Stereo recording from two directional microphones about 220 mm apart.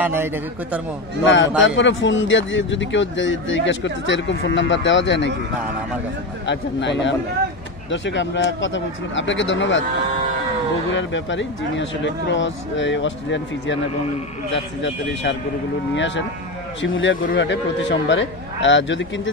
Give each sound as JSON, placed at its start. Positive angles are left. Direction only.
{"t": 0.0, "sound": "a man's voice", "side_deg": -10}
{"t": 1.2, "sound": "a man's voice", "side_deg": 55}
{"t": 6.4, "sound": "a man's voice", "side_deg": 55}
{"t": 10.9, "sound": "a man's voice", "side_deg": 55}